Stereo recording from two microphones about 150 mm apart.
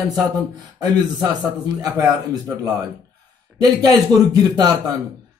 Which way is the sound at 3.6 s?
25° right (ahead or behind).